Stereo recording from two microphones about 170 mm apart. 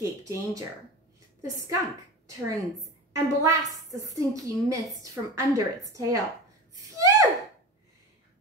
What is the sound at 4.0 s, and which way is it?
A woman's voice, 20° right (ahead or behind).